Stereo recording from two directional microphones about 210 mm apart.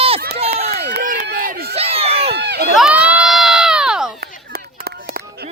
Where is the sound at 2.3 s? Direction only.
50° right (ahead or behind).